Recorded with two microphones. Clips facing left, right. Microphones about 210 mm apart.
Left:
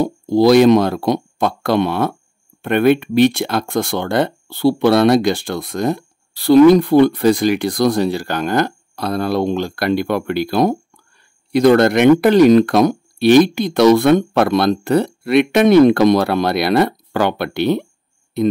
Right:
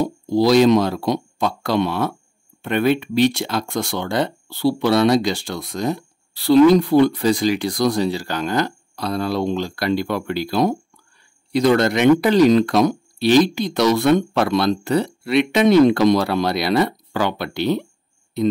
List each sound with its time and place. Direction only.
0.0 s speech: 55° left (ahead or behind)